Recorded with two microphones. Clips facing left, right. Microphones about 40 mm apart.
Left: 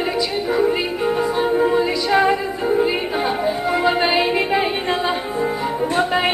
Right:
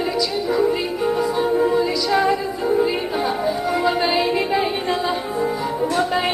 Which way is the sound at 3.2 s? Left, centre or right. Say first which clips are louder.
Left 1 dB; left.